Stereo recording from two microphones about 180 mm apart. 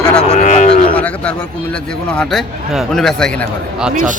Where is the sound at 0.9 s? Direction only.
5° left (ahead or behind).